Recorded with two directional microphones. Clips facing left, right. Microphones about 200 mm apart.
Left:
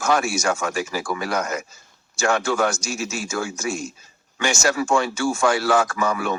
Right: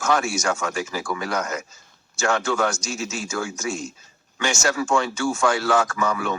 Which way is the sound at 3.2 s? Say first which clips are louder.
Left 1 dB; 25° left (ahead or behind).